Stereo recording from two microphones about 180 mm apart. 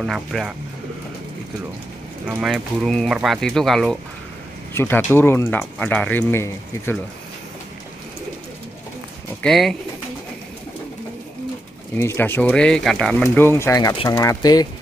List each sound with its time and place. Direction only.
0.0 s speech: centre (ahead or behind)
2.2 s speech: 5° right (ahead or behind)
4.7 s speech: 10° left (ahead or behind)
9.4 s speech: centre (ahead or behind)
12.0 s speech: 10° left (ahead or behind)